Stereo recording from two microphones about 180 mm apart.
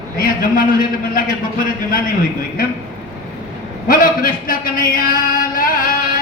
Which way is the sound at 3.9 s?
50° left (ahead or behind).